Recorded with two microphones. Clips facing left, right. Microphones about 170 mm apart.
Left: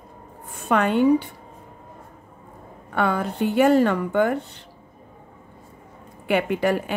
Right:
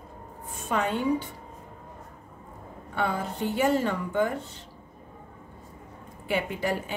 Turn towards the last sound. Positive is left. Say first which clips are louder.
# left 7 dB
turn(degrees=70)  # may be behind; listen again after turning